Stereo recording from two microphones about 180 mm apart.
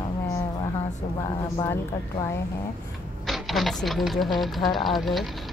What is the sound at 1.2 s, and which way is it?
A woman's voice, 15° left (ahead or behind).